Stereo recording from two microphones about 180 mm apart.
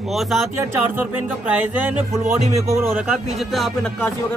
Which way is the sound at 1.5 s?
10° right (ahead or behind).